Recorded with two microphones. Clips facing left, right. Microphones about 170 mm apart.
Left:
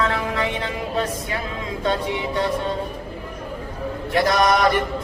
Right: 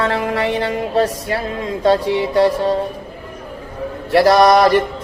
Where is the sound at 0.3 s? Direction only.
35° right (ahead or behind).